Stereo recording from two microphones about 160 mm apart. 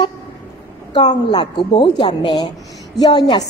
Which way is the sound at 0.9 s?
30° left (ahead or behind).